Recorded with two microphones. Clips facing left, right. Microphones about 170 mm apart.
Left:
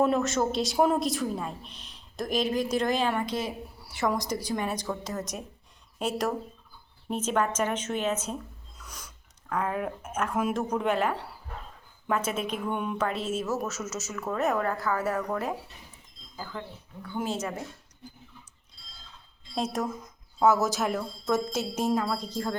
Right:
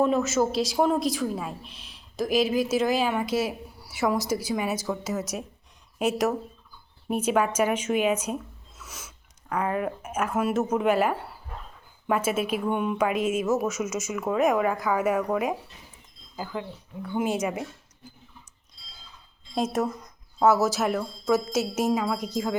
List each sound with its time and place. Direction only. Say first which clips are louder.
0.0 s a woman's voice: right 2 dB; centre (ahead or behind)
19.5 s a woman's voice: right 4 dB; 5° right (ahead or behind)